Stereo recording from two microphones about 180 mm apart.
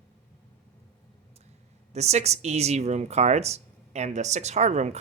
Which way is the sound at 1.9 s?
35° right (ahead or behind).